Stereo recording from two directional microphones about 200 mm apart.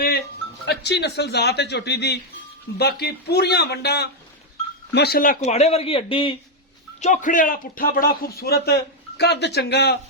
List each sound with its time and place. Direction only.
0.6 s speech: 55° left (ahead or behind); by 6.3 s 25° left (ahead or behind)
7.0 s a man's voice: 40° left (ahead or behind); by 10.0 s 55° left (ahead or behind)